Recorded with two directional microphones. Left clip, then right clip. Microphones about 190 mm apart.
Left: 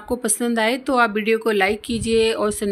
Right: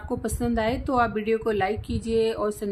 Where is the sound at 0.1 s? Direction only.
15° left (ahead or behind).